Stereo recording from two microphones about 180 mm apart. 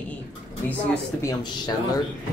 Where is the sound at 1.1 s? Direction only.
20° left (ahead or behind).